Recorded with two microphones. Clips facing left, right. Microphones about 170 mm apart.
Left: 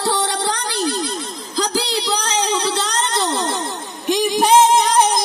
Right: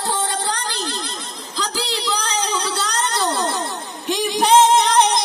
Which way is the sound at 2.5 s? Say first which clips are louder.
Left 3 dB; 30° left (ahead or behind).